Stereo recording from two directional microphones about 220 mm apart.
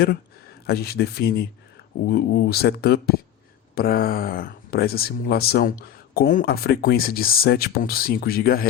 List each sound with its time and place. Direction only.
0.7 s speech: 45° left (ahead or behind)